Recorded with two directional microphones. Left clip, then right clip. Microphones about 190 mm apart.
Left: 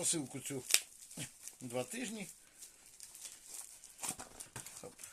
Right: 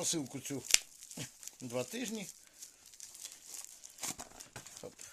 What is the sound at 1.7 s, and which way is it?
Speech, 50° right (ahead or behind).